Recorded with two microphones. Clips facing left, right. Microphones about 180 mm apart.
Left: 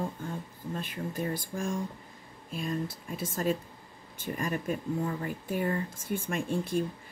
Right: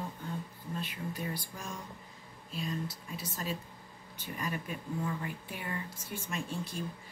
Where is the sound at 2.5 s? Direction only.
50° left (ahead or behind).